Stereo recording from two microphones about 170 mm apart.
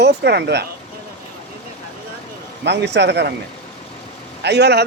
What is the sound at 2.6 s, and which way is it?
Speech, 90° right.